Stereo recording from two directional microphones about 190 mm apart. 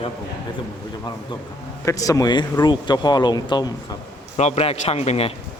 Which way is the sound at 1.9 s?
15° left (ahead or behind).